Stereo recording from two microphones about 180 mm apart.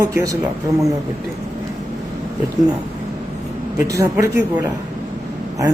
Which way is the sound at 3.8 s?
15° right (ahead or behind).